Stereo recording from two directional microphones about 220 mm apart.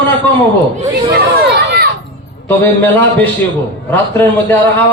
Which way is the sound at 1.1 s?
45° right (ahead or behind).